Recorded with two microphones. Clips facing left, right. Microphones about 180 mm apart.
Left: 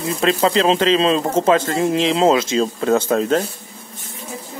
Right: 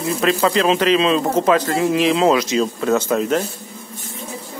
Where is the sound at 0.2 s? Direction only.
25° left (ahead or behind).